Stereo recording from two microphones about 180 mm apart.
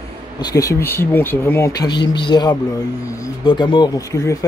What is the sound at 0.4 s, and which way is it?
Speech, 20° left (ahead or behind).